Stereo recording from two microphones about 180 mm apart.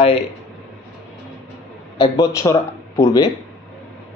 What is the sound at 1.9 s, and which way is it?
A man's voice, 20° left (ahead or behind).